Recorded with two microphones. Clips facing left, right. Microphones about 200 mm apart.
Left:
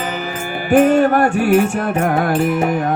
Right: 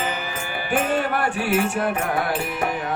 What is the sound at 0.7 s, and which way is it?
Music, 45° left (ahead or behind).